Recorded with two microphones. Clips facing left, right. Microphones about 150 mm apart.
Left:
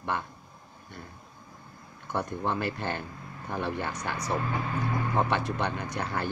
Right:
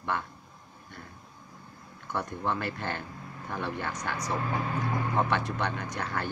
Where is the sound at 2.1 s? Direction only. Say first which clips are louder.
Left 2 dB; 20° left (ahead or behind).